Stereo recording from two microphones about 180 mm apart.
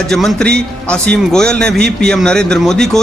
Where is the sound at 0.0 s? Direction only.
Centre (ahead or behind).